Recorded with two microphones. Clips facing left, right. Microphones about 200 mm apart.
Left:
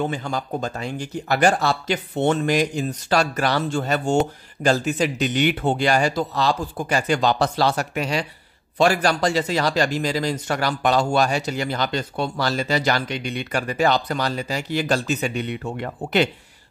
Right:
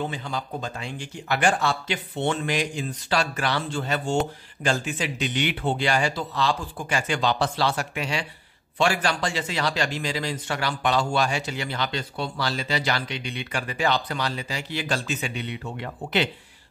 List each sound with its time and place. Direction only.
0.0 s a man's voice: 45° left (ahead or behind)